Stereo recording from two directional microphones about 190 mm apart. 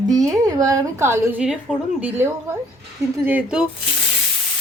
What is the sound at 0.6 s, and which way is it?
Speech, 15° right (ahead or behind).